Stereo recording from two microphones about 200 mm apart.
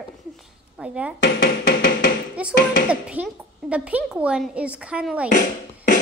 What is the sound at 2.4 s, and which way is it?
A woman's voice, 5° right (ahead or behind).